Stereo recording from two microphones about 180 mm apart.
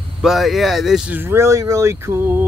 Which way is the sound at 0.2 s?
Centre (ahead or behind).